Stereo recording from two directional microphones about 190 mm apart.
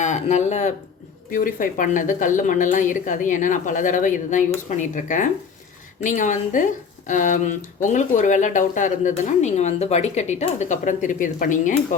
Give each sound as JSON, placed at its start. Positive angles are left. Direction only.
{"t": 0.0, "sound": "a woman's voice", "side_deg": 40}